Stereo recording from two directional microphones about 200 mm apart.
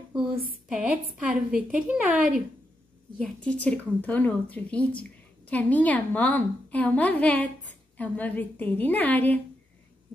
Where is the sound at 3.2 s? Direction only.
5° left (ahead or behind).